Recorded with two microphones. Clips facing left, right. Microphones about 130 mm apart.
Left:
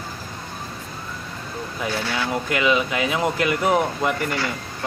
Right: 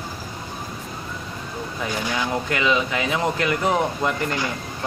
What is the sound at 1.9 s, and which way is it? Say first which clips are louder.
Speech: even; 15° right (ahead or behind).